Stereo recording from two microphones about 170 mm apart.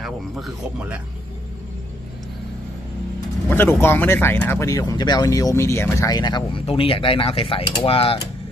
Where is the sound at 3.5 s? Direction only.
10° left (ahead or behind); by 8.2 s 35° left (ahead or behind).